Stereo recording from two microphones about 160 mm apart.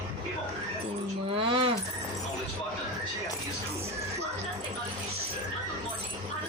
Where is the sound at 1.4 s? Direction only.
35° right (ahead or behind).